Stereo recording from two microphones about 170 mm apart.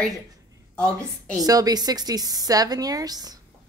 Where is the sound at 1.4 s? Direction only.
20° right (ahead or behind).